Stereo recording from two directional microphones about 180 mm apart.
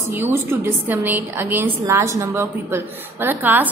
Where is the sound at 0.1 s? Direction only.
15° right (ahead or behind).